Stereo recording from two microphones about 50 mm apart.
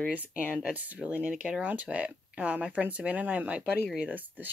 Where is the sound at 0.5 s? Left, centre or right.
Centre.